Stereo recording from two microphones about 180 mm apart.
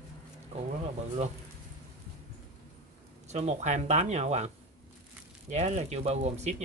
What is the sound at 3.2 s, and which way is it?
Speech, 40° right (ahead or behind).